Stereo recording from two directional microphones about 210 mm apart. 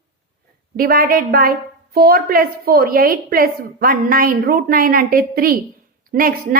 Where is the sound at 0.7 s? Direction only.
45° right (ahead or behind).